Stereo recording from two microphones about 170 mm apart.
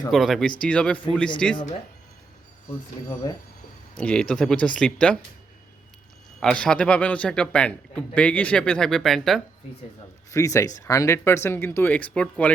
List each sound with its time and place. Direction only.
0.1 s a man's voice: centre (ahead or behind)
3.9 s a man's voice: 5° left (ahead or behind)
6.4 s a man's voice: 5° left (ahead or behind)
10.3 s speech: 20° left (ahead or behind)